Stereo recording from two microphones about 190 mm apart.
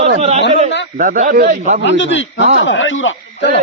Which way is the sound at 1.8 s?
70° left (ahead or behind).